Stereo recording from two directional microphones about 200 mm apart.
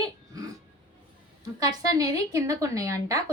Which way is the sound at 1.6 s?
20° right (ahead or behind).